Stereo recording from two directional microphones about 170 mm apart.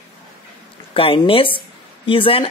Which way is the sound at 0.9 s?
30° left (ahead or behind).